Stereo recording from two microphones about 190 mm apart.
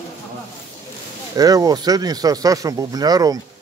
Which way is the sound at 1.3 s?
20° right (ahead or behind).